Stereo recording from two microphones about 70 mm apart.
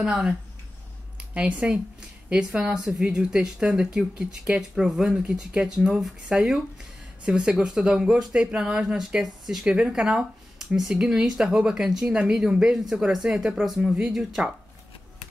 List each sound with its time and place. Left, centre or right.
0.0 s speech: centre
8.8 s speech: centre